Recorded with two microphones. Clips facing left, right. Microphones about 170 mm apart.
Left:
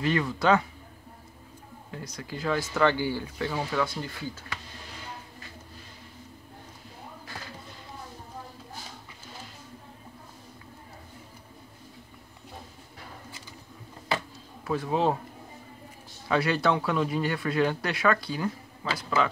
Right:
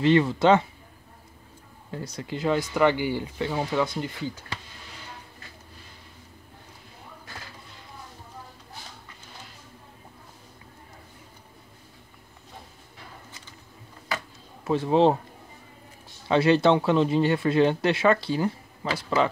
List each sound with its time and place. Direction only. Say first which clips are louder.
0.0 s speech: right 6 dB; 25° right (ahead or behind)
1.9 s speech: right 5 dB; 30° right (ahead or behind)
14.6 s a man's voice: right 6 dB; 25° right (ahead or behind)
16.3 s a man's voice: right 6 dB; 25° right (ahead or behind)